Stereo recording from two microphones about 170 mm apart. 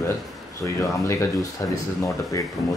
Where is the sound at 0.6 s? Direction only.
20° left (ahead or behind).